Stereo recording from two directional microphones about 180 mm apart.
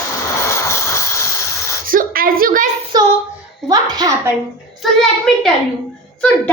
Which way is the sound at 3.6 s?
20° right (ahead or behind).